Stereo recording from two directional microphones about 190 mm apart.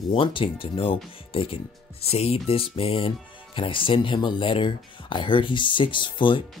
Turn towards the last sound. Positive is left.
turn(degrees=25)  # may be behind; listen again after turning